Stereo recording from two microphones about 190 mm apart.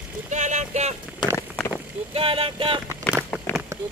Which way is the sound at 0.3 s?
40° right (ahead or behind).